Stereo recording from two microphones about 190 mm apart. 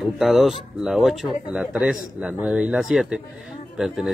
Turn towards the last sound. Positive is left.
turn(degrees=0)  # may be behind; listen again after turning